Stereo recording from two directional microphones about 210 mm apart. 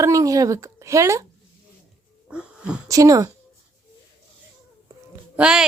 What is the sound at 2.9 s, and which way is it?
Speech, 15° right (ahead or behind).